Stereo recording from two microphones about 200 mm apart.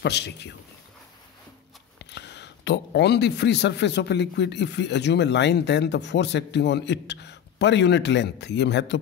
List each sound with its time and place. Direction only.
0.0 s speech: 55° left (ahead or behind)
2.0 s speech: 60° left (ahead or behind)